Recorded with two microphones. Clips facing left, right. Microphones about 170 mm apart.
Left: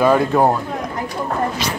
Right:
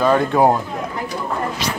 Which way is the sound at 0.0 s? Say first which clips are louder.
Left 2 dB; 5° left (ahead or behind).